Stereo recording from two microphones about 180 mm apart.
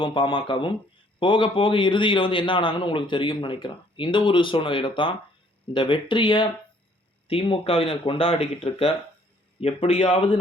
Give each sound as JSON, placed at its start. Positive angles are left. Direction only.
{"t": 0.0, "sound": "a man's voice", "side_deg": 25}